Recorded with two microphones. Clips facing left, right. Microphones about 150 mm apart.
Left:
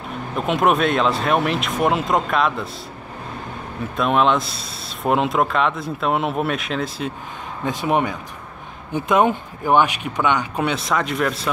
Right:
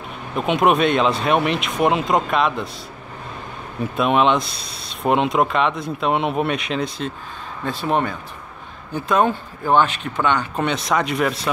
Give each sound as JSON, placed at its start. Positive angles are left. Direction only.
{"t": 0.4, "sound": "speech", "side_deg": 0}
{"t": 3.9, "sound": "speech", "side_deg": 0}
{"t": 7.6, "sound": "speech", "side_deg": 15}